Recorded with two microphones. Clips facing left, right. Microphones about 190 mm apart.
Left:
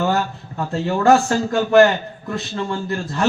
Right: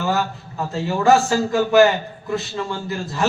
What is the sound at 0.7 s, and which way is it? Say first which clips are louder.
A man's voice: left 1 dB; centre (ahead or behind).